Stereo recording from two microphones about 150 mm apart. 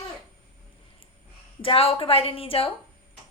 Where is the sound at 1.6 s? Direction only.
40° left (ahead or behind).